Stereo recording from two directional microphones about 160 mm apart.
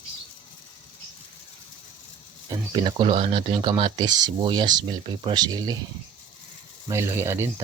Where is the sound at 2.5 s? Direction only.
30° right (ahead or behind).